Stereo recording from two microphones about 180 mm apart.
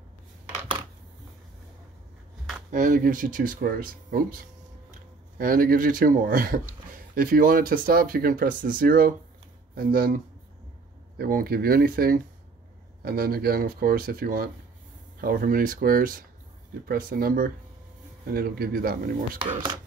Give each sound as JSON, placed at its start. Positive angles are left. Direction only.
{"t": 2.7, "sound": "speech", "side_deg": -45}